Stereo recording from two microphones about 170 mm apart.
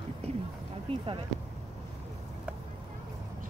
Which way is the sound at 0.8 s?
30° right (ahead or behind).